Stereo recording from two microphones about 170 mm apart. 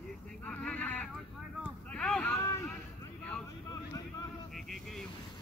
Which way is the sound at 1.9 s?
5° left (ahead or behind).